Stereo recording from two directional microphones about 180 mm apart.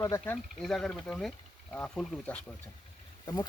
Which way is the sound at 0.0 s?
15° left (ahead or behind).